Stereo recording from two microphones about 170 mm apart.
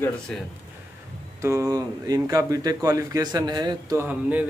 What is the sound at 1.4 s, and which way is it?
A man's voice, 15° right (ahead or behind).